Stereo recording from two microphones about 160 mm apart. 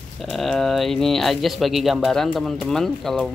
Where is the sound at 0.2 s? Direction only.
Centre (ahead or behind).